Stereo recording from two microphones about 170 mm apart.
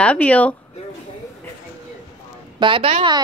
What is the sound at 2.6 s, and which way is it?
Speech, 30° right (ahead or behind).